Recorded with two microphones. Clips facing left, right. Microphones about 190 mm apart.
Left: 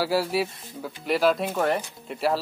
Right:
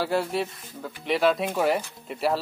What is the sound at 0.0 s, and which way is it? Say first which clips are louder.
Speech: left 1 dB; 5° left (ahead or behind).